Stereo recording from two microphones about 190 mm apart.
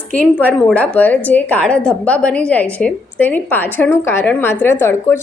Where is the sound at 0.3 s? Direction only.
10° left (ahead or behind).